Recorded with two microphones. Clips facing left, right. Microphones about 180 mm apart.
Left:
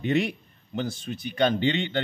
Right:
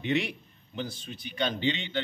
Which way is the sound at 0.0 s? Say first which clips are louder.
Left 4 dB; 45° left (ahead or behind).